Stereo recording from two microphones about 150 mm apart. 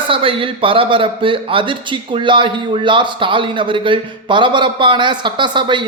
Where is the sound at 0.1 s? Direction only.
35° right (ahead or behind).